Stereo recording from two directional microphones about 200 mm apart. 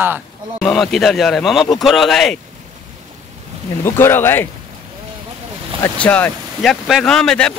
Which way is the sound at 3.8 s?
10° left (ahead or behind).